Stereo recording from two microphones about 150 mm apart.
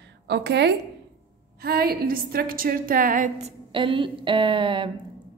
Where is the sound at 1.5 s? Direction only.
90° right; by 3.5 s 60° right (ahead or behind).